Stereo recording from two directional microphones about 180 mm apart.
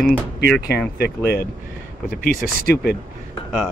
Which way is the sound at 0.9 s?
65° left (ahead or behind).